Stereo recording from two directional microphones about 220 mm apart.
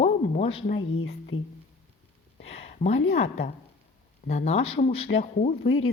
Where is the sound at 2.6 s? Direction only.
30° left (ahead or behind).